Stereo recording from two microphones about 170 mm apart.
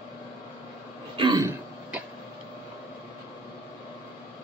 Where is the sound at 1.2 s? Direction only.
25° right (ahead or behind).